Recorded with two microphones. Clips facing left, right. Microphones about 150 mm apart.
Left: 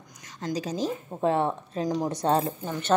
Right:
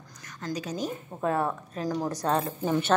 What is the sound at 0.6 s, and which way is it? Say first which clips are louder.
A woman's voice: left 4 dB; 35° left (ahead or behind).